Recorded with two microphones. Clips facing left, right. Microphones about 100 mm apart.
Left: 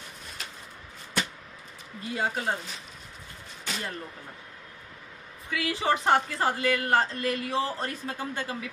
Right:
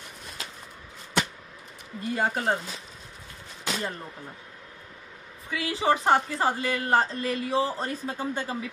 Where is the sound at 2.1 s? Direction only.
50° right (ahead or behind).